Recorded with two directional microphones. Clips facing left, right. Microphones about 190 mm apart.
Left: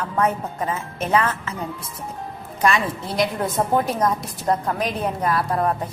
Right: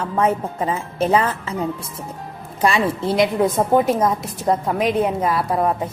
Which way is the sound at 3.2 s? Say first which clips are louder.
Right 4 dB; 15° right (ahead or behind).